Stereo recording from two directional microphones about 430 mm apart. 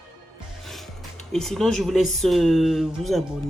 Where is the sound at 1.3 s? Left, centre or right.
Centre.